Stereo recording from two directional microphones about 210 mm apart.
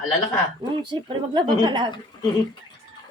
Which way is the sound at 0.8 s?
20° right (ahead or behind).